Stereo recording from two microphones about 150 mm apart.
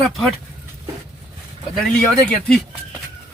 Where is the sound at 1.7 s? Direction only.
5° left (ahead or behind).